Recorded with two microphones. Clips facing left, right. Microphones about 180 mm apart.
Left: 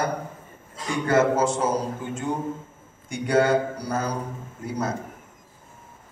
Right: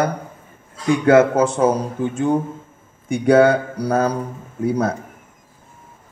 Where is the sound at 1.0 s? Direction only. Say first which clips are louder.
Right 6 dB; 60° right (ahead or behind).